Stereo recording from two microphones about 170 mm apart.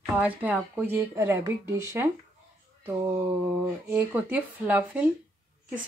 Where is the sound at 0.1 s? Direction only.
10° right (ahead or behind).